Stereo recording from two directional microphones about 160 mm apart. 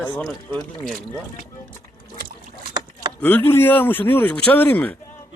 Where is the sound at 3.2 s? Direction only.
10° left (ahead or behind).